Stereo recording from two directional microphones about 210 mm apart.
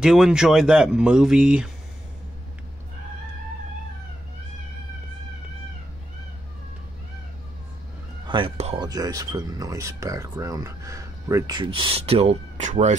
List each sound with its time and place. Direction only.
0.0 s speech: centre (ahead or behind)
8.3 s speech: 25° right (ahead or behind)
8.8 s speech: 20° right (ahead or behind); by 12.9 s 35° right (ahead or behind)